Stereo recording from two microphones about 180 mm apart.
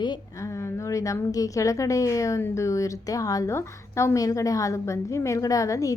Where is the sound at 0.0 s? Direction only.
20° left (ahead or behind).